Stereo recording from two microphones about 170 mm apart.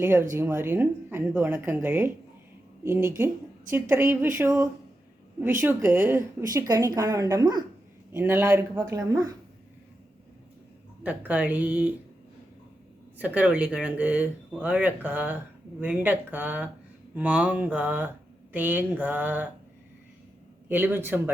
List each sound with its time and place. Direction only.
0.0 s speech: 15° right (ahead or behind)
11.0 s speech: 10° right (ahead or behind)
13.1 s speech: 10° right (ahead or behind)
20.7 s speech: 10° right (ahead or behind)